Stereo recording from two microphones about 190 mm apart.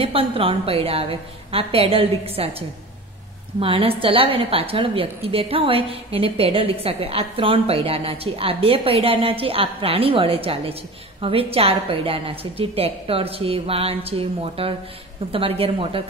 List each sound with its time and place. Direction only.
0.0 s a woman's voice: 30° right (ahead or behind)
3.5 s a woman's voice: 30° right (ahead or behind)